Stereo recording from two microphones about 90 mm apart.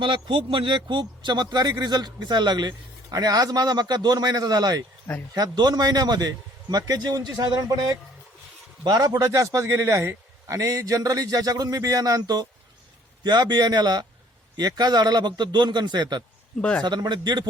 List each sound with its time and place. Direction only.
0.0 s speech: 75° right (ahead or behind)
0.9 s a man's voice: 60° right (ahead or behind)
16.6 s a man's voice: 10° left (ahead or behind)
16.8 s speech: 55° right (ahead or behind)